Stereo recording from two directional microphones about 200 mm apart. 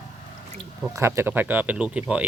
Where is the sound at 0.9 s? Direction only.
15° right (ahead or behind).